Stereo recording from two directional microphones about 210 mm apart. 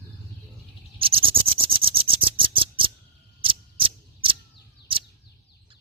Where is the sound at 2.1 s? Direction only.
25° right (ahead or behind).